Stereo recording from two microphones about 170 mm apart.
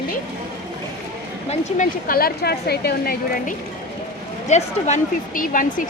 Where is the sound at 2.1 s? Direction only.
60° left (ahead or behind).